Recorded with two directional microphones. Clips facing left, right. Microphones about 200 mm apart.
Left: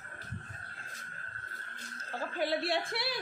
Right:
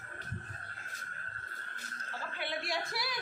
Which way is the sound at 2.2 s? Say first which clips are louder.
Left 8 dB; 35° left (ahead or behind).